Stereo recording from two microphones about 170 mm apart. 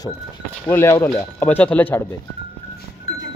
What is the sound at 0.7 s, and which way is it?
Speech, 15° left (ahead or behind).